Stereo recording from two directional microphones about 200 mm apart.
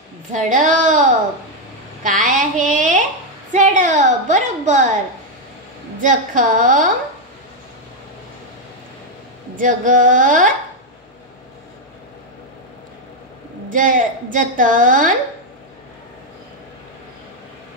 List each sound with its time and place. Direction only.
0.3 s a woman's voice: 40° right (ahead or behind)
2.0 s a sound: 40° right (ahead or behind)
6.0 s a woman's voice: 40° right (ahead or behind)
9.6 s a woman's voice: 40° right (ahead or behind)
13.7 s a woman's voice: 40° right (ahead or behind)